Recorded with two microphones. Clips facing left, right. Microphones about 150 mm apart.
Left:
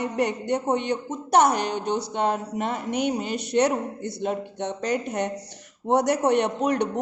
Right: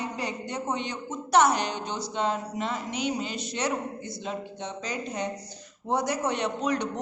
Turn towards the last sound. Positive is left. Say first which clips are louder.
# left 5 dB
turn(degrees=55)  # may be behind; listen again after turning